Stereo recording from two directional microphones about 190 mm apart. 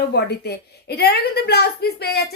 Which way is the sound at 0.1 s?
60° left (ahead or behind).